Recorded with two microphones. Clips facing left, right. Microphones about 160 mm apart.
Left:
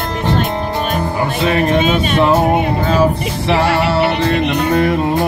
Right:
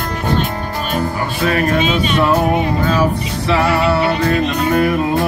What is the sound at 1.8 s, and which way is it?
Speech, 50° left (ahead or behind).